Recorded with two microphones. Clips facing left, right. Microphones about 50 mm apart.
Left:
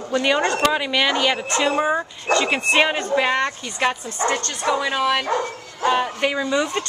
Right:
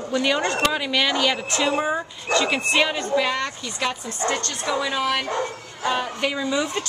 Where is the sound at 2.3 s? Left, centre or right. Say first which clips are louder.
Left 2 dB; left.